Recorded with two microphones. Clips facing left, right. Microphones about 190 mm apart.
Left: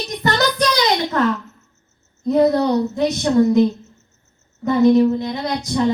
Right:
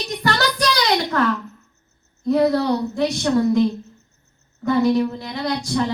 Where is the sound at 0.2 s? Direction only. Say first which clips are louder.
Left 3 dB; 20° left (ahead or behind).